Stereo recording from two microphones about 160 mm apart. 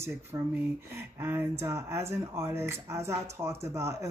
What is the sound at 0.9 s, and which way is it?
Speech, 15° right (ahead or behind).